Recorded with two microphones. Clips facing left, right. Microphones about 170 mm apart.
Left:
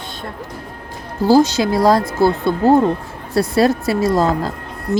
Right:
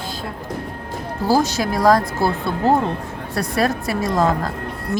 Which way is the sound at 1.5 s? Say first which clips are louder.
Left 2 dB; 25° left (ahead or behind).